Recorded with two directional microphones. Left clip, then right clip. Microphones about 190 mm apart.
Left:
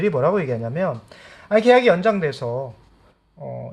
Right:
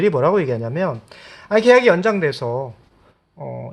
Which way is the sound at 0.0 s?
40° right (ahead or behind).